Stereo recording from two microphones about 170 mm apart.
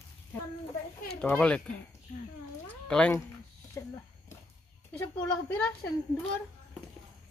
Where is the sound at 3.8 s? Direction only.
15° left (ahead or behind).